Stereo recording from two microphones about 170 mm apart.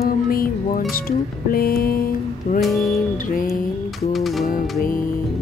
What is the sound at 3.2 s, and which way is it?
Music, 55° left (ahead or behind).